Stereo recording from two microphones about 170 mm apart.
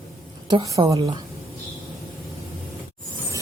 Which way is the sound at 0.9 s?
35° right (ahead or behind).